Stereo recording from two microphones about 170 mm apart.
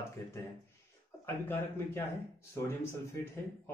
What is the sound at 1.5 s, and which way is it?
Speech, 15° left (ahead or behind).